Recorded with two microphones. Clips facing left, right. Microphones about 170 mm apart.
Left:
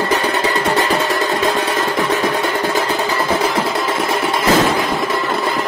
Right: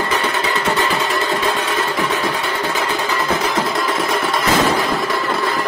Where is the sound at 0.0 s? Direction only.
35° left (ahead or behind).